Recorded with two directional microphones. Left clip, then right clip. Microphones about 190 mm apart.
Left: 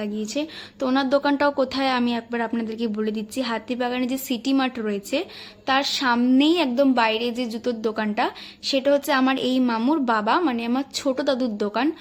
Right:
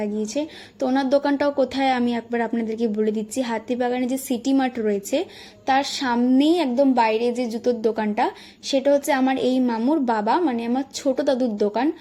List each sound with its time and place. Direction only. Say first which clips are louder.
0.0 s a woman's voice: right 2 dB; centre (ahead or behind)